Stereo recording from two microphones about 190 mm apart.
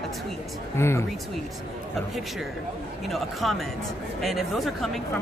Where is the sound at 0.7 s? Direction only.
15° left (ahead or behind).